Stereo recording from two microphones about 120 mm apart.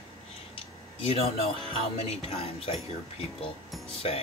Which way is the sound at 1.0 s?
55° left (ahead or behind).